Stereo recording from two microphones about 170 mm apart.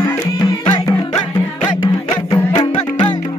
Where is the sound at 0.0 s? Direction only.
20° left (ahead or behind).